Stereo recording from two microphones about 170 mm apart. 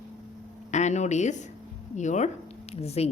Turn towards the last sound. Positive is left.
turn(degrees=40)  # may be behind; listen again after turning